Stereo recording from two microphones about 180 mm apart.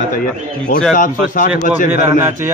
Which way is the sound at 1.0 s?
50° left (ahead or behind).